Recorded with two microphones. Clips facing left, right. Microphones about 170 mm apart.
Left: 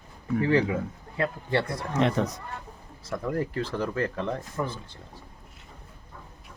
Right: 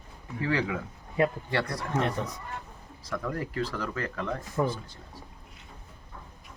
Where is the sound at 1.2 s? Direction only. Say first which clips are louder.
Right 3 dB; 15° right (ahead or behind).